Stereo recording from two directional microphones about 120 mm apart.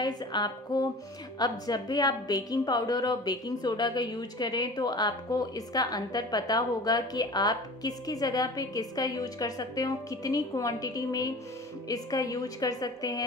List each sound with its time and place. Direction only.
0.0 s a woman's voice: 35° left (ahead or behind)